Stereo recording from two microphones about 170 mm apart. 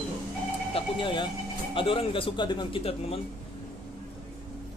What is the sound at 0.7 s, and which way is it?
A man's voice, 30° left (ahead or behind).